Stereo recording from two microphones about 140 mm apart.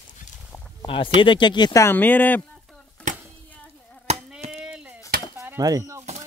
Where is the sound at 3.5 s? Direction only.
10° left (ahead or behind).